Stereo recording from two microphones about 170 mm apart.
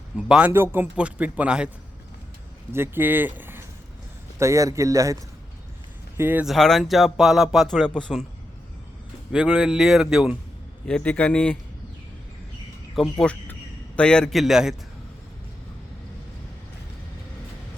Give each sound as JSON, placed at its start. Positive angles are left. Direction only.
{"t": 0.3, "sound": "speech", "side_deg": -10}
{"t": 2.7, "sound": "speech", "side_deg": -15}
{"t": 6.1, "sound": "speech", "side_deg": -10}
{"t": 9.3, "sound": "speech", "side_deg": -5}
{"t": 10.8, "sound": "a man's voice", "side_deg": 10}
{"t": 13.0, "sound": "a man's voice", "side_deg": 5}